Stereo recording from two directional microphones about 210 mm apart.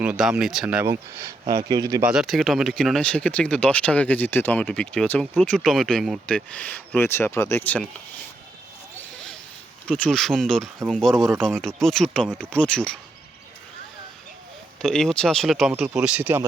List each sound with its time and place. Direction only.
0.0 s speech: 5° right (ahead or behind)
2.0 s speech: centre (ahead or behind)
9.8 s speech: 5° left (ahead or behind)
14.8 s speech: 5° left (ahead or behind)